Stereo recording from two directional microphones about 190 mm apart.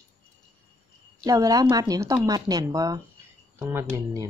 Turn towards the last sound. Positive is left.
turn(degrees=-15)  # may be behind; listen again after turning